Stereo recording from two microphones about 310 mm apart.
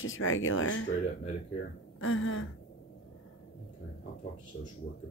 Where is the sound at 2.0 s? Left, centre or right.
Left.